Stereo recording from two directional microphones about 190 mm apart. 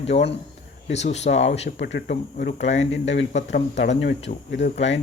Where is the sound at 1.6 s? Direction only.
60° left (ahead or behind).